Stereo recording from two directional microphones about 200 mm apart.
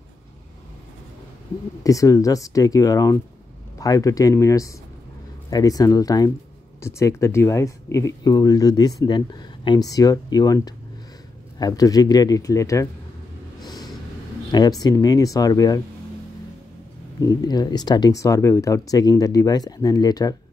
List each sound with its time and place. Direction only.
1.8 s speech: 15° left (ahead or behind)
13.6 s vehicle: 20° left (ahead or behind)
14.5 s speech: 20° left (ahead or behind)
17.2 s speech: 20° left (ahead or behind)